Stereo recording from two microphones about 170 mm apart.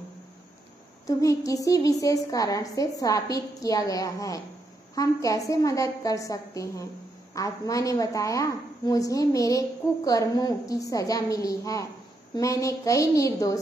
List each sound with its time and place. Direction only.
1.0 s a woman's voice: 20° left (ahead or behind)